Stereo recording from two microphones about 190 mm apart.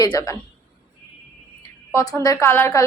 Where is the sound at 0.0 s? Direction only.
20° left (ahead or behind).